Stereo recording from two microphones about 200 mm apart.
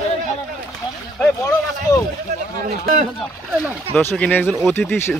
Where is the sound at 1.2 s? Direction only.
15° left (ahead or behind).